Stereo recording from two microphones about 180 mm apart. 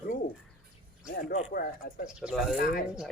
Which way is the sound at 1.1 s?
45° left (ahead or behind).